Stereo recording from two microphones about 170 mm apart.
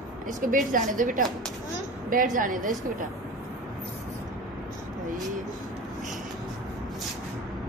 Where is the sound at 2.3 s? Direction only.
50° right (ahead or behind).